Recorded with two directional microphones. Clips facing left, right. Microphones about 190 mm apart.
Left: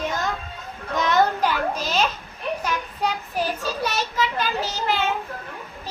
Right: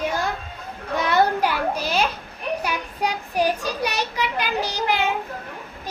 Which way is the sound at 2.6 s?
10° right (ahead or behind).